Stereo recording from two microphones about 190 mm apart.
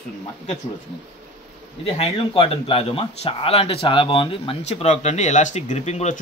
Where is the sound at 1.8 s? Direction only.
30° left (ahead or behind).